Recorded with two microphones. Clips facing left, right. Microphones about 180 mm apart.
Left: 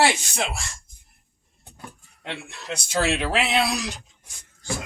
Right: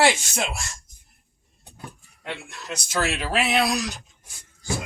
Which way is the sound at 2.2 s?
25° left (ahead or behind).